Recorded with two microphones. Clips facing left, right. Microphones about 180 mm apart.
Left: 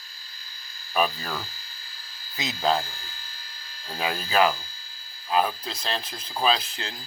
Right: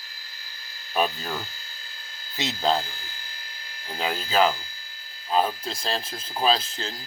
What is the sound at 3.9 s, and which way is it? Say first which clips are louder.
Speech: even; 20° right (ahead or behind).